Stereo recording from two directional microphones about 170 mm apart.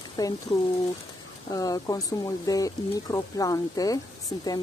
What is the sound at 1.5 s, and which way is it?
Speech, 20° left (ahead or behind).